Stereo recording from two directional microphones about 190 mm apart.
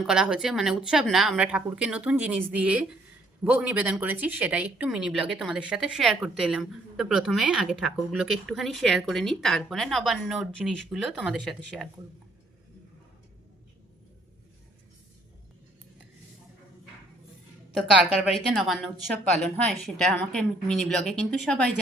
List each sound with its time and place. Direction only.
0.0 s speech: 5° right (ahead or behind)
17.7 s speech: centre (ahead or behind)